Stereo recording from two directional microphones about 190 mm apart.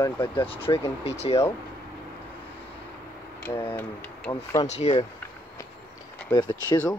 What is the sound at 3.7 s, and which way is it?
Speech, 10° left (ahead or behind).